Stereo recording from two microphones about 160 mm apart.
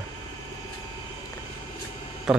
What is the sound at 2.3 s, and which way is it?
Speech, centre (ahead or behind).